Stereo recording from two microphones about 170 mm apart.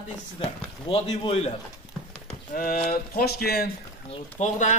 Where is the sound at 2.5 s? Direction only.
55° left (ahead or behind).